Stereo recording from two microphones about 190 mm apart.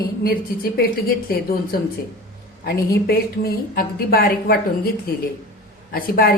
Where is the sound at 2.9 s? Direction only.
50° left (ahead or behind).